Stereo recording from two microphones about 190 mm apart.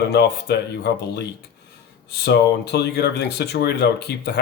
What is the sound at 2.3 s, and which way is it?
Speech, 60° left (ahead or behind).